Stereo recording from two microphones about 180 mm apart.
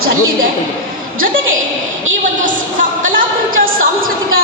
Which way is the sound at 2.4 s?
45° right (ahead or behind).